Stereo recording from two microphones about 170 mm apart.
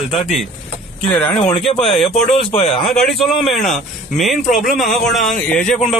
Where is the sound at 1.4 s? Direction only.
Centre (ahead or behind).